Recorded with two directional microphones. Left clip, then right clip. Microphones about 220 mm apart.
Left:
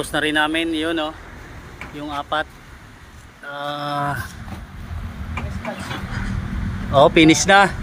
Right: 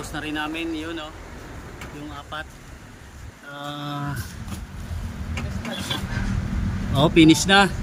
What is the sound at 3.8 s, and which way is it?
Speech, 15° left (ahead or behind).